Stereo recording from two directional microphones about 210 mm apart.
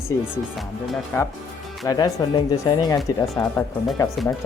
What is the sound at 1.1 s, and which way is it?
Speech, 10° left (ahead or behind).